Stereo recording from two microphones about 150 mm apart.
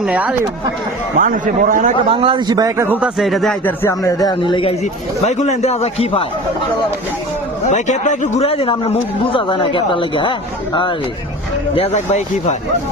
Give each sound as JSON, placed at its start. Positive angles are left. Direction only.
{"t": 0.0, "sound": "speech", "side_deg": -10}
{"t": 1.2, "sound": "a man's voice", "side_deg": -65}
{"t": 2.0, "sound": "a man's voice", "side_deg": -35}
{"t": 3.2, "sound": "speech", "side_deg": 0}
{"t": 3.7, "sound": "speech", "side_deg": 20}
{"t": 5.2, "sound": "a man's voice", "side_deg": 50}
{"t": 7.6, "sound": "a man's voice", "side_deg": 55}
{"t": 11.7, "sound": "a man's voice", "side_deg": 45}